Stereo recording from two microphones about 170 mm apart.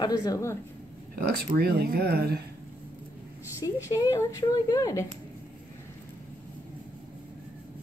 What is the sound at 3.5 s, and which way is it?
Speech, 20° left (ahead or behind).